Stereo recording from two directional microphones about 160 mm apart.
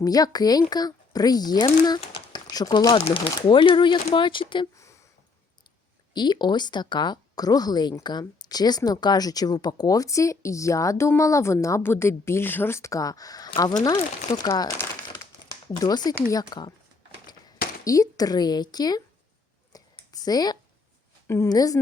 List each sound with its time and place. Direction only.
0.0 s speech: 25° left (ahead or behind)
6.1 s speech: 25° left (ahead or behind)
17.8 s speech: 20° left (ahead or behind)
19.7 s a sound: 25° left (ahead or behind)
21.2 s speech: 15° left (ahead or behind)